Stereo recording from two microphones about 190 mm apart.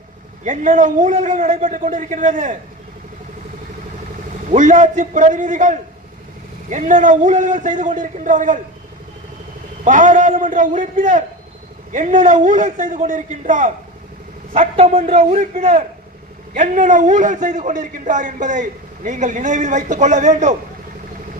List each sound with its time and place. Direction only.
0.4 s a man's voice: 45° right (ahead or behind)
4.4 s a man's voice: 40° right (ahead or behind)
9.8 s a man's voice: 40° right (ahead or behind)